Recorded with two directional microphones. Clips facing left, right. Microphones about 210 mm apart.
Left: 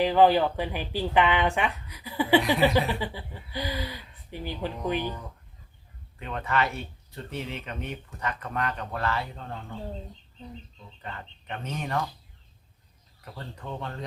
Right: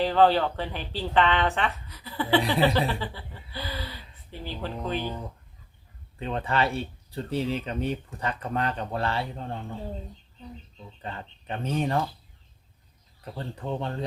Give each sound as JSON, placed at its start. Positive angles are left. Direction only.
{"t": 0.0, "sound": "speech", "side_deg": 10}
{"t": 6.1, "sound": "speech", "side_deg": -30}
{"t": 11.0, "sound": "speech", "side_deg": -30}
{"t": 13.3, "sound": "speech", "side_deg": -30}